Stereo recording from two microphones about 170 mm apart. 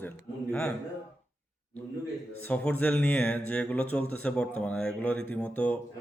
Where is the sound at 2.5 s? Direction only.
5° left (ahead or behind).